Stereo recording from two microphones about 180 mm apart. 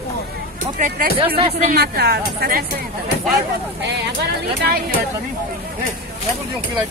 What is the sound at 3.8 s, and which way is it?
Speech, 60° right (ahead or behind).